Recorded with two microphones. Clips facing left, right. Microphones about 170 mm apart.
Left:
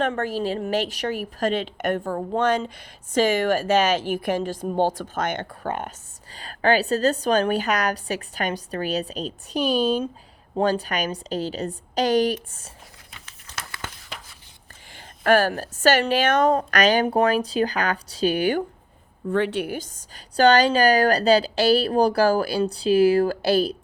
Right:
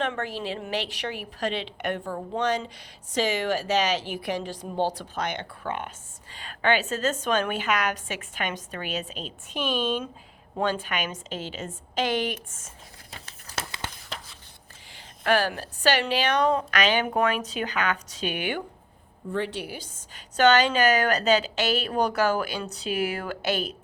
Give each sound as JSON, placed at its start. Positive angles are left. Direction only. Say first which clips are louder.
{"t": 0.0, "sound": "a woman's voice", "louder": "left 5 dB", "side_deg": 45}
{"t": 13.1, "sound": "a sound", "louder": "right 2 dB", "side_deg": -35}
{"t": 14.9, "sound": "a woman's voice", "louder": "left 5 dB", "side_deg": 50}
{"t": 19.3, "sound": "a woman's voice", "louder": "left 7 dB", "side_deg": 60}